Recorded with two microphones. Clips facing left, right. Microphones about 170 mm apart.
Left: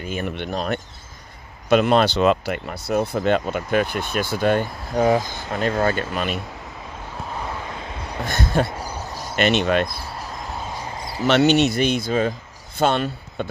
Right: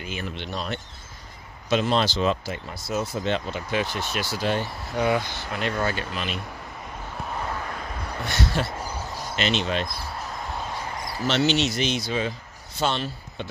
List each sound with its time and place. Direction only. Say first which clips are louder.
0.0 s speech: left 6 dB; 50° left (ahead or behind)
8.3 s speech: left 5 dB; 50° left (ahead or behind)
11.0 s a sound: left 3 dB; 25° left (ahead or behind)
11.2 s speech: left 7 dB; 60° left (ahead or behind)